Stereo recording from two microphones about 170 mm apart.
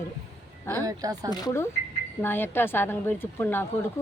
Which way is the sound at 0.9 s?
20° right (ahead or behind).